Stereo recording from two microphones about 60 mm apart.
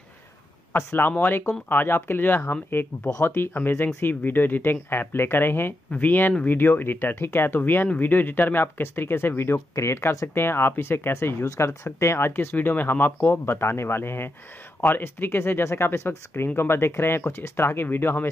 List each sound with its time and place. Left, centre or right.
0.7 s speech: left
5.9 s speech: left
11.4 s speech: left
12.3 s speech: left